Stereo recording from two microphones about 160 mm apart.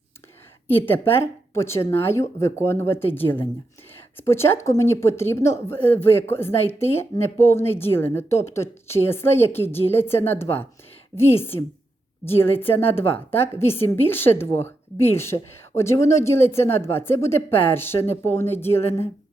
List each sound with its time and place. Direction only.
0.9 s a woman's voice: 15° left (ahead or behind)
4.2 s a woman's voice: 15° left (ahead or behind)